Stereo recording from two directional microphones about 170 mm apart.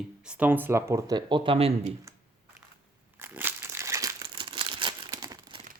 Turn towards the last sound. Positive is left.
turn(degrees=-25)  # may be behind; listen again after turning